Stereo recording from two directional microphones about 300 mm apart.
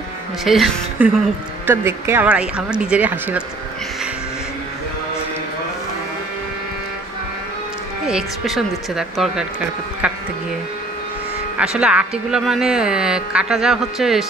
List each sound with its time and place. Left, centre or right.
0.5 s speech: centre
8.1 s speech: centre
11.5 s speech: centre